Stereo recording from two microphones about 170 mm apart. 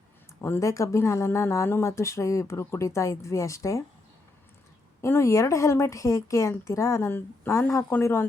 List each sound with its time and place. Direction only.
0.4 s speech: 15° left (ahead or behind)
5.0 s speech: 15° left (ahead or behind)